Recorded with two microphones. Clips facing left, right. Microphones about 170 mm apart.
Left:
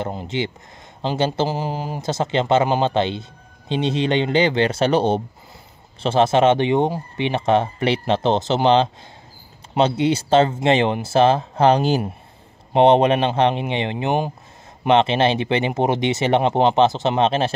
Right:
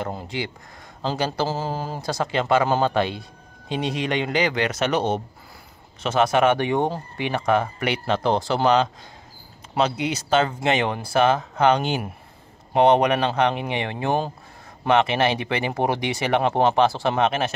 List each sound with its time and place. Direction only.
0.0 s a man's voice: 20° left (ahead or behind)